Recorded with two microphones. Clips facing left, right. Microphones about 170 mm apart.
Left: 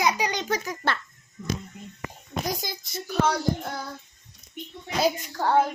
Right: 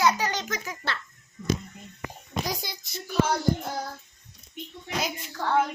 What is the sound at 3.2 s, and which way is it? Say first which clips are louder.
Child singing: left 1 dB; 65° left (ahead or behind).